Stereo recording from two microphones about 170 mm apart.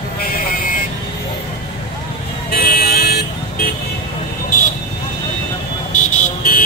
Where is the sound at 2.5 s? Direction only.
65° left (ahead or behind).